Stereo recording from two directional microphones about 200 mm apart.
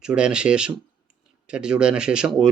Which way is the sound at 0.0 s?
5° right (ahead or behind).